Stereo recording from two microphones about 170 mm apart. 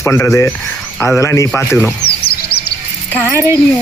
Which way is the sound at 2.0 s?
70° left (ahead or behind).